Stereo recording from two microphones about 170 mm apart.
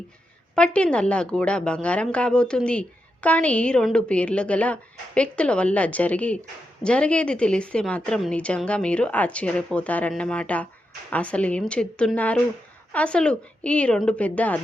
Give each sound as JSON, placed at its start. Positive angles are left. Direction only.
{"t": 0.5, "sound": "a woman's voice", "side_deg": 5}